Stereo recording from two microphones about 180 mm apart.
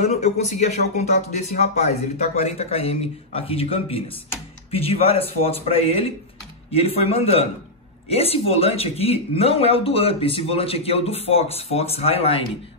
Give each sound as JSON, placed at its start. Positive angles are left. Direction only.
{"t": 0.0, "sound": "speech", "side_deg": 40}